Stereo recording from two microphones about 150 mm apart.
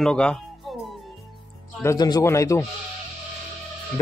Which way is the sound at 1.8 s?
25° left (ahead or behind).